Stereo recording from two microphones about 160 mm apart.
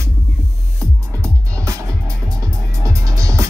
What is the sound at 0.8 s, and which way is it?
Music, 20° right (ahead or behind).